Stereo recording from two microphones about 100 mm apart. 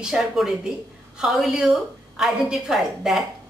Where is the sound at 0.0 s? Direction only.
5° right (ahead or behind).